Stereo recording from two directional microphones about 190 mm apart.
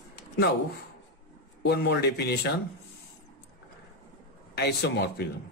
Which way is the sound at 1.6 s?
60° left (ahead or behind).